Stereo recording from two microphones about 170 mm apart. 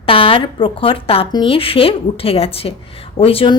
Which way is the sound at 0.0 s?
30° left (ahead or behind).